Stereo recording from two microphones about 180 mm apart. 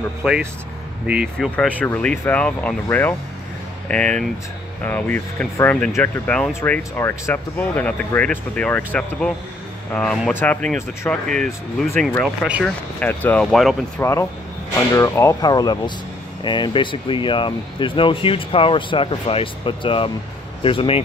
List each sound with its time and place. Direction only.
0.2 s speech: 5° right (ahead or behind)
14.9 s speech: 15° left (ahead or behind)